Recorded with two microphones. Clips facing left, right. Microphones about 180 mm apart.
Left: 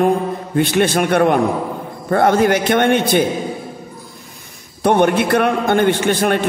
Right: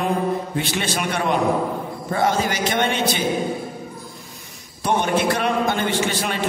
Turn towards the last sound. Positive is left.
turn(degrees=55)  # may be behind; listen again after turning